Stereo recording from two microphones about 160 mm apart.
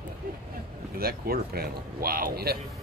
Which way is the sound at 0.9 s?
70° right (ahead or behind).